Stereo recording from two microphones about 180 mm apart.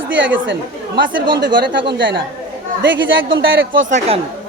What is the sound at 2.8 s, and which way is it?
Speech, 90° right.